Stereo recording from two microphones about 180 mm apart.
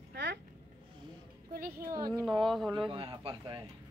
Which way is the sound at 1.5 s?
55° right (ahead or behind).